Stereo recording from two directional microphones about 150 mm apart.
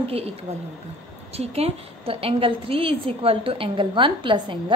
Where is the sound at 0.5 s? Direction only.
45° right (ahead or behind).